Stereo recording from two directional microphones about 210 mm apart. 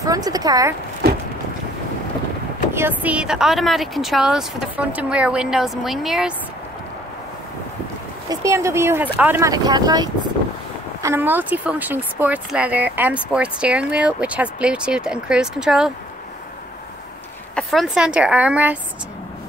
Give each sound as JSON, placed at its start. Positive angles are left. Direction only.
{"t": 0.0, "sound": "speech", "side_deg": -15}
{"t": 1.0, "sound": "a sound", "side_deg": -45}
{"t": 2.7, "sound": "speech", "side_deg": -10}
{"t": 8.3, "sound": "speech", "side_deg": -15}
{"t": 17.6, "sound": "speech", "side_deg": 0}